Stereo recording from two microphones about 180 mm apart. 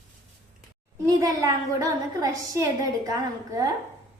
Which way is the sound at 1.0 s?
20° right (ahead or behind).